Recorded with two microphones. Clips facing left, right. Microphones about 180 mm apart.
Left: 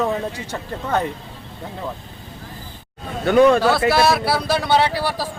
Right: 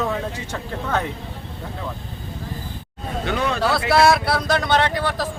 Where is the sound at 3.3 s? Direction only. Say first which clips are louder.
Left 12 dB; 50° left (ahead or behind).